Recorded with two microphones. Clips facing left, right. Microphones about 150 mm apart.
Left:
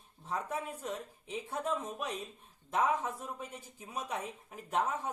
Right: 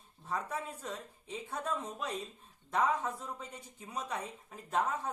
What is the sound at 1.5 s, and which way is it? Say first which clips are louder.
A woman's voice: left 2 dB; centre (ahead or behind).